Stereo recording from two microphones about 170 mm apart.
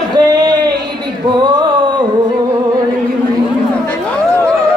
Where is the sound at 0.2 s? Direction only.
25° right (ahead or behind).